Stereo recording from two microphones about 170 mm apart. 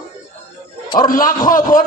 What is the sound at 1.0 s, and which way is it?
Speech, 55° left (ahead or behind).